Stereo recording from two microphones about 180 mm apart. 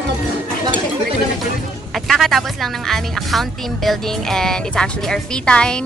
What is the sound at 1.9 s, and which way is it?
Speech, centre (ahead or behind).